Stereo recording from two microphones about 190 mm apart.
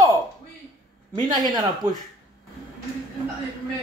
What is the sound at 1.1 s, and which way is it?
Speech, 20° right (ahead or behind).